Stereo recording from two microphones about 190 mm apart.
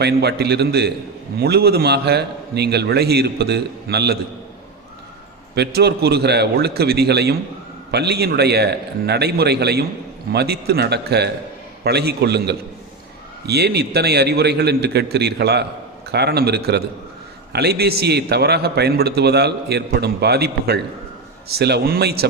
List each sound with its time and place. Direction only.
0.0 s a man's voice: 60° right (ahead or behind)
5.5 s a man's voice: 60° right (ahead or behind)